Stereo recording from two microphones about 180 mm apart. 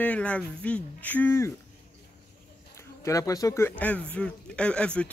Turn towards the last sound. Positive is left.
turn(degrees=5)  # may be behind; listen again after turning